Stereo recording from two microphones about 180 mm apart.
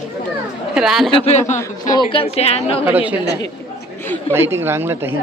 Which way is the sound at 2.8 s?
10° right (ahead or behind).